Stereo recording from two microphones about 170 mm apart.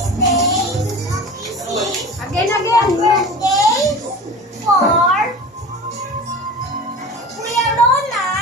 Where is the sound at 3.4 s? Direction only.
20° left (ahead or behind).